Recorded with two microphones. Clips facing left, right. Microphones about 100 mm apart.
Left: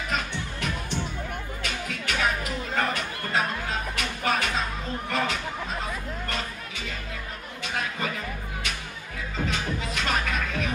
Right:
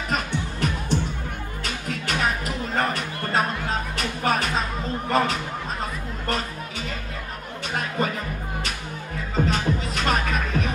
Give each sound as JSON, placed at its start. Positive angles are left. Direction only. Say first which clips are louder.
{"t": 0.1, "sound": "music", "louder": "right 5 dB", "side_deg": -40}
{"t": 5.1, "sound": "speech", "louder": "right 6 dB", "side_deg": -40}
{"t": 9.3, "sound": "music", "louder": "right 6 dB", "side_deg": -40}